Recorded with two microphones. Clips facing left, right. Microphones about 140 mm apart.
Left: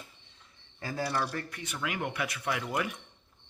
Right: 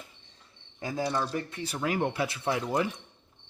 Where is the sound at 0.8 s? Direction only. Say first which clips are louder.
Right 2 dB; 15° right (ahead or behind).